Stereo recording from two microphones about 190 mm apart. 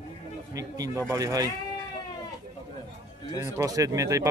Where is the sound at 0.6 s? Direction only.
20° right (ahead or behind).